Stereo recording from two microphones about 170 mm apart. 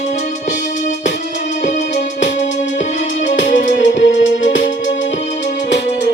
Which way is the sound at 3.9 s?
90° left.